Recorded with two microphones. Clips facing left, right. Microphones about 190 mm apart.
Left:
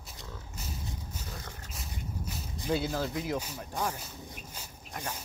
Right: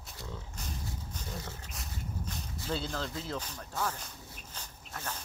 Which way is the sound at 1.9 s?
10° left (ahead or behind).